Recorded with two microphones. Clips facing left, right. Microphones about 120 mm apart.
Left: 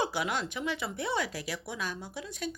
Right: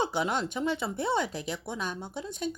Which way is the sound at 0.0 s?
20° right (ahead or behind).